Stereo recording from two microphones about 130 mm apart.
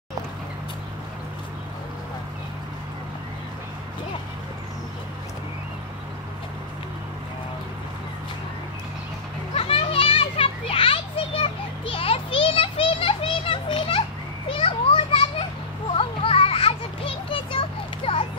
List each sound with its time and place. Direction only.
9.6 s children playing: 45° left (ahead or behind)